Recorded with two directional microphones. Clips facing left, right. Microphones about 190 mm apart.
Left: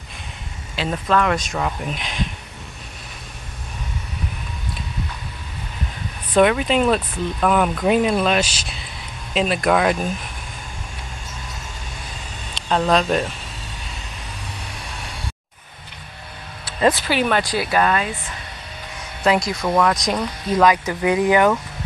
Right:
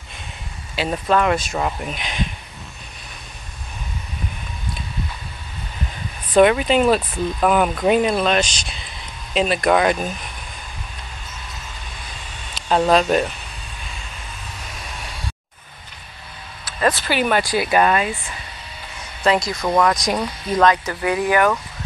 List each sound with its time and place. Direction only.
0.7 s speech: 10° right (ahead or behind)
6.3 s speech: centre (ahead or behind)
12.5 s speech: 5° right (ahead or behind)
17.0 s speech: centre (ahead or behind)
19.2 s speech: centre (ahead or behind)
20.7 s speech: 15° left (ahead or behind)